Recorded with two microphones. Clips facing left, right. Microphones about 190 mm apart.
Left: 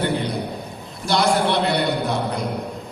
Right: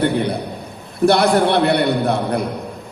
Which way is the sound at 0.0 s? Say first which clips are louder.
Right 4 dB; 60° right (ahead or behind).